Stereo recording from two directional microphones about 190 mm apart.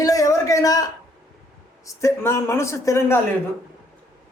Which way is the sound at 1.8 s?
15° left (ahead or behind).